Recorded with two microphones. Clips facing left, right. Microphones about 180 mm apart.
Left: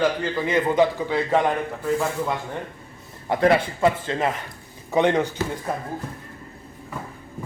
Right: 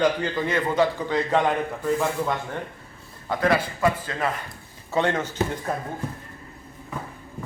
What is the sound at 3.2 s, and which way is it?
A man's voice, 25° left (ahead or behind).